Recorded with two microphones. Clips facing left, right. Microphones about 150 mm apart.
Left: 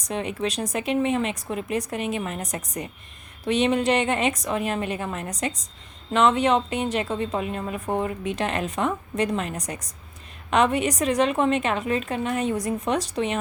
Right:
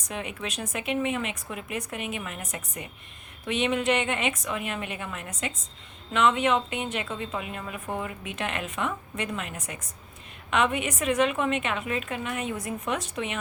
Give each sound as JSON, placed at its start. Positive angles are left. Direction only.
{"t": 0.0, "sound": "a woman's voice", "side_deg": 35}